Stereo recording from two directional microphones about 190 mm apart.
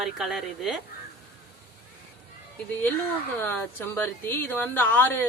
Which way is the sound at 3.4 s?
10° left (ahead or behind).